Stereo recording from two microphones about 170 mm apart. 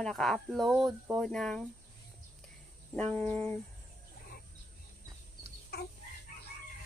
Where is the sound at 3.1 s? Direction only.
10° left (ahead or behind).